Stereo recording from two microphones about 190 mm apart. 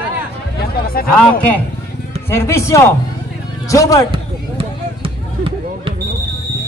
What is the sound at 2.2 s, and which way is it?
A man's voice, 15° left (ahead or behind).